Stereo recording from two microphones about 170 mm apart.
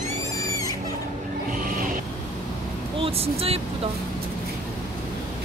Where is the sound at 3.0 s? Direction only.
35° right (ahead or behind).